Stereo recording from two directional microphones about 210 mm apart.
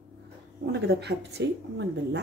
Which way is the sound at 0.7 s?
55° right (ahead or behind).